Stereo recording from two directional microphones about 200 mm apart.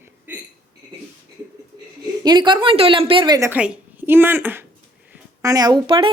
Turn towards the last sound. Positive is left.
turn(degrees=-25)  # may be behind; listen again after turning